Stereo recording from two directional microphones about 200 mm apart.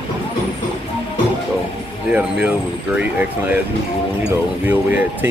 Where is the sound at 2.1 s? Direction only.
5° right (ahead or behind).